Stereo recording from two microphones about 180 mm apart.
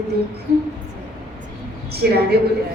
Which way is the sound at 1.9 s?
60° right (ahead or behind).